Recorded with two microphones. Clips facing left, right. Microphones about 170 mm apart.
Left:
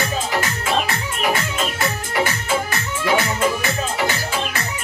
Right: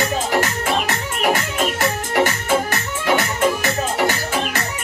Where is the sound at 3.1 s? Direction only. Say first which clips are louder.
Right 1 dB; 40° right (ahead or behind).